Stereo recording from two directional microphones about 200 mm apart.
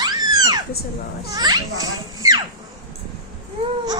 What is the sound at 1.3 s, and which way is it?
Speech, 20° right (ahead or behind).